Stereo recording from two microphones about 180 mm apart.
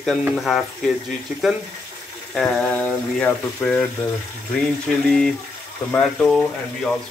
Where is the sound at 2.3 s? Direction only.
5° left (ahead or behind).